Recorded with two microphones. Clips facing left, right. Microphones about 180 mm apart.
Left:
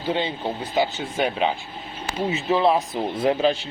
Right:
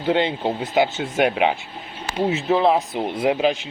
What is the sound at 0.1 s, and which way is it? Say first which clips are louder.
Speech: right 5 dB; 65° right (ahead or behind).